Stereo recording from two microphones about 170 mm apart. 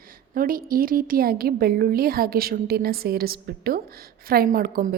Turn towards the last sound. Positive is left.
turn(degrees=-55)  # may be behind; listen again after turning